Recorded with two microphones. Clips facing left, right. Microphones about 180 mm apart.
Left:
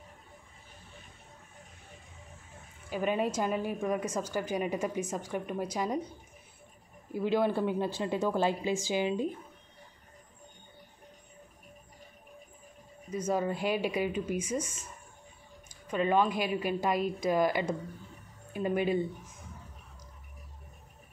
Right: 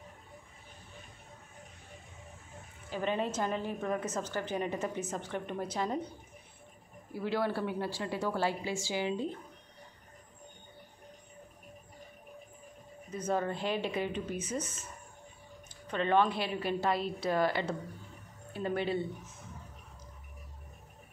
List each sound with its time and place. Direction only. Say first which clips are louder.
2.9 s a woman's voice: left 3 dB; 10° left (ahead or behind)
7.1 s a woman's voice: left 4 dB; 20° left (ahead or behind)
13.1 s a woman's voice: left 2 dB; 10° left (ahead or behind)
15.9 s a woman's voice: left 1 dB; 10° left (ahead or behind)